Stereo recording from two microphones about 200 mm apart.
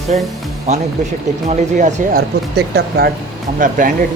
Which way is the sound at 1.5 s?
40° right (ahead or behind).